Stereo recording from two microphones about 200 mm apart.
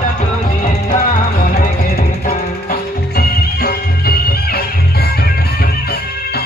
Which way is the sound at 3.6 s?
50° left (ahead or behind).